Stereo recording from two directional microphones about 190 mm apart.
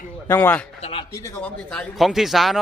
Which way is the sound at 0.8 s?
30° left (ahead or behind).